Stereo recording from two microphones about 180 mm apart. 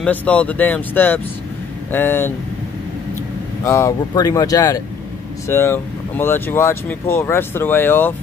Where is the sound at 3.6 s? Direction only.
15° left (ahead or behind).